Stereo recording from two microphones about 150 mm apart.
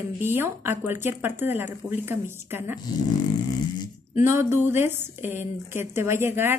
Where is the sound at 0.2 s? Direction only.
15° right (ahead or behind).